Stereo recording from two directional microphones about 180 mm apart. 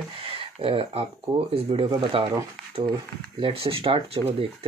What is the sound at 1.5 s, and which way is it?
Speech, 35° right (ahead or behind).